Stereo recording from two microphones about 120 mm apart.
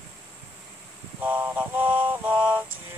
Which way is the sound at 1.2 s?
15° right (ahead or behind).